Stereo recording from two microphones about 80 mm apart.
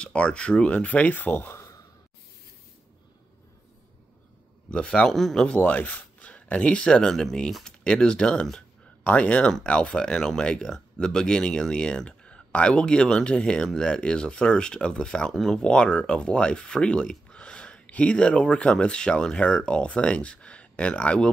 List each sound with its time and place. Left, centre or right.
0.0 s speech: centre; by 1.7 s left
4.6 s speech: centre
5.6 s speech: centre